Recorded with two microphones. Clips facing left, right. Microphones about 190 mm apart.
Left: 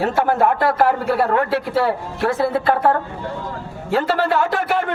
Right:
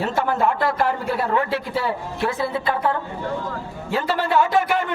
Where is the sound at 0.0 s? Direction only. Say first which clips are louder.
Left 4 dB; 55° left (ahead or behind).